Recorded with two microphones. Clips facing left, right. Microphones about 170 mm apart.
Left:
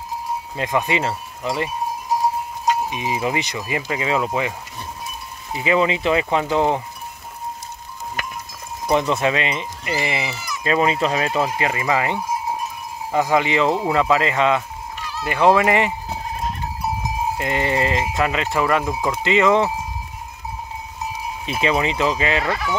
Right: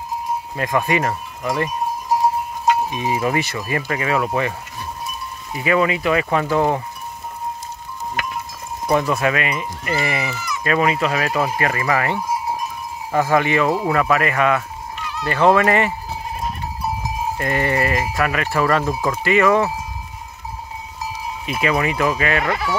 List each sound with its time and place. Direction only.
0.6 s speech: 20° left (ahead or behind)
2.9 s speech: 15° left (ahead or behind)
8.8 s speech: 20° left (ahead or behind)
17.4 s speech: 20° left (ahead or behind)
21.5 s speech: 25° left (ahead or behind)